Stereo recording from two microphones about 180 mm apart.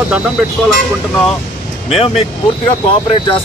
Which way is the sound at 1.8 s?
35° left (ahead or behind).